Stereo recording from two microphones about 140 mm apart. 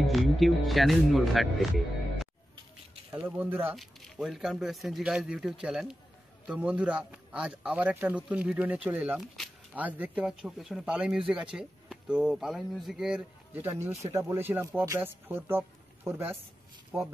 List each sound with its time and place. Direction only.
0.0 s speech: centre (ahead or behind)
3.2 s a man's voice: 15° right (ahead or behind)
3.7 s a man's voice: centre (ahead or behind)
9.2 s a sound: centre (ahead or behind)
9.8 s a man's voice: 10° right (ahead or behind)
13.7 s a man's voice: 15° right (ahead or behind)
16.9 s speech: centre (ahead or behind)